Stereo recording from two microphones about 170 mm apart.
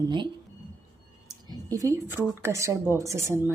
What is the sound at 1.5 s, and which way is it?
A woman's voice, 20° right (ahead or behind).